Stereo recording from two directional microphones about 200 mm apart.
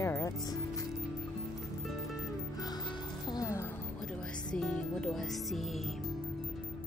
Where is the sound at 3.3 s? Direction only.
15° left (ahead or behind).